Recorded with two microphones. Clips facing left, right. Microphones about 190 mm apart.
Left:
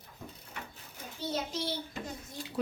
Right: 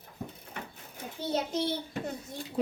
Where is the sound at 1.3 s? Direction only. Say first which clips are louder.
Right 6 dB; 55° right (ahead or behind).